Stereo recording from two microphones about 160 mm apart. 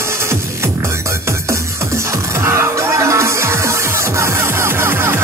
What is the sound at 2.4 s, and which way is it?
Music, 15° right (ahead or behind).